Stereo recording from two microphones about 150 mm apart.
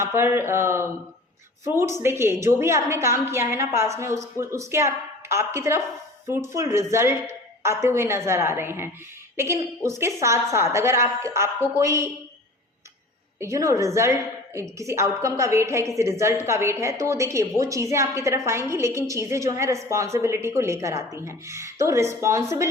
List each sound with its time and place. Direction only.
0.0 s a woman's voice: 15° right (ahead or behind)
13.4 s a woman's voice: 20° right (ahead or behind)